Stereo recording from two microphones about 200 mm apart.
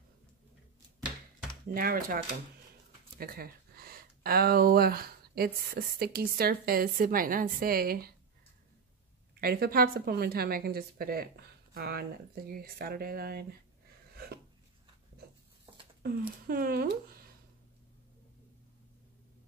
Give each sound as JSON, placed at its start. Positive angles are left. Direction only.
{"t": 1.7, "sound": "speech", "side_deg": -45}
{"t": 3.2, "sound": "speech", "side_deg": -50}
{"t": 9.3, "sound": "speech", "side_deg": -50}
{"t": 14.1, "sound": "a sound", "side_deg": -50}
{"t": 16.0, "sound": "speech", "side_deg": -50}